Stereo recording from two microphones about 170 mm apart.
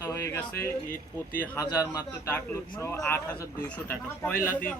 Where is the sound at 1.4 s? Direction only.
10° left (ahead or behind).